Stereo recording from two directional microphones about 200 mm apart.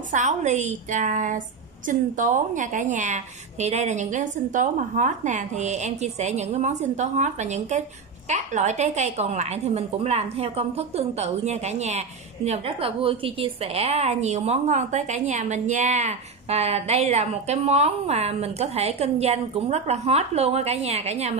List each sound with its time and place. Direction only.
0.1 s a woman's voice: 35° right (ahead or behind)